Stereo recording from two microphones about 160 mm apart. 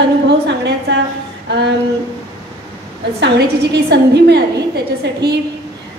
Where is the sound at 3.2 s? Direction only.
90° right.